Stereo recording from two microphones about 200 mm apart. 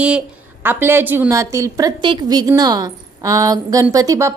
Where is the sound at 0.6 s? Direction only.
10° right (ahead or behind).